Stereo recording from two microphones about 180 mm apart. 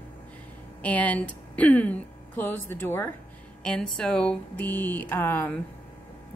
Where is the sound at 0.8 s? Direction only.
10° left (ahead or behind).